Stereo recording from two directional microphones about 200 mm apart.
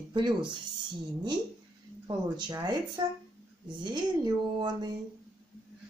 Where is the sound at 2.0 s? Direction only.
20° right (ahead or behind).